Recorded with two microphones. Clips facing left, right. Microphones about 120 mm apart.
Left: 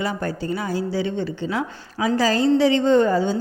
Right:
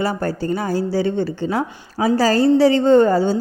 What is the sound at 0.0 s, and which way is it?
A woman's voice, 40° right (ahead or behind).